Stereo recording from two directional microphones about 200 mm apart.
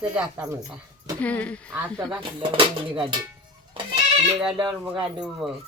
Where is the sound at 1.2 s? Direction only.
5° left (ahead or behind).